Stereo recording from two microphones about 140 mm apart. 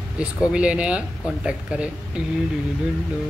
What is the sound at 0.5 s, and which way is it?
Speech, 10° right (ahead or behind).